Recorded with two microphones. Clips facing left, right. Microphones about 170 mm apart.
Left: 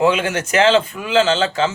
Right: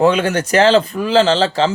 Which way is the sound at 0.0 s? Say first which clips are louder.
Right 3 dB; 35° right (ahead or behind).